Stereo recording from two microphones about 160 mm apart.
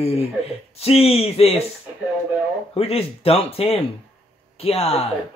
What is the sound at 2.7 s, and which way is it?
Speech, 35° left (ahead or behind).